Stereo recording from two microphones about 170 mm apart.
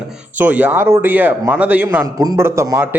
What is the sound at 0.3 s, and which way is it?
Speech, 10° right (ahead or behind).